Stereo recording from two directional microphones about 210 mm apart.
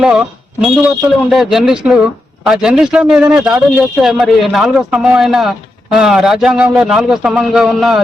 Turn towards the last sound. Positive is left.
turn(degrees=0)  # may be behind; listen again after turning